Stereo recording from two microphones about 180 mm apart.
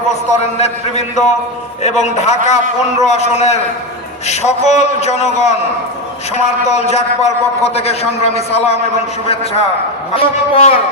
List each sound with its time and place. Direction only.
0.1 s a man's voice: 40° left (ahead or behind)